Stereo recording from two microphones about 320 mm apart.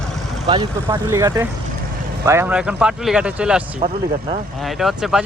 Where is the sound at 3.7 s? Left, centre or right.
Centre.